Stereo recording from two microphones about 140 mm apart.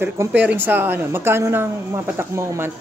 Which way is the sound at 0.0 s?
10° right (ahead or behind).